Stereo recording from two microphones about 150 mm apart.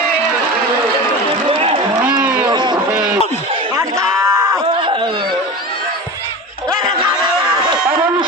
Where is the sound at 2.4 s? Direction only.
30° right (ahead or behind).